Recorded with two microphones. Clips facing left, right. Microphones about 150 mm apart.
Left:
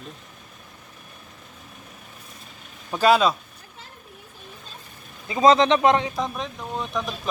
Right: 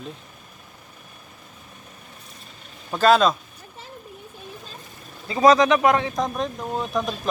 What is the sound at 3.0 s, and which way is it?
Speech, 10° left (ahead or behind).